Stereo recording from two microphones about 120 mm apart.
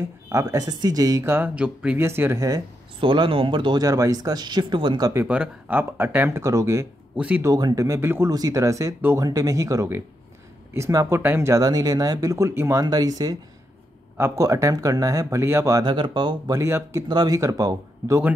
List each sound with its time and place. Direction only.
0.3 s speech: 25° right (ahead or behind)
1.3 s speech: 10° right (ahead or behind)
3.0 s speech: 45° right (ahead or behind)
3.8 s speech: 30° right (ahead or behind)
5.1 s speech: 15° right (ahead or behind)
7.2 s speech: 10° right (ahead or behind)
7.4 s speech: 30° right (ahead or behind)
15.8 s speech: 40° right (ahead or behind)
16.5 s speech: 25° right (ahead or behind)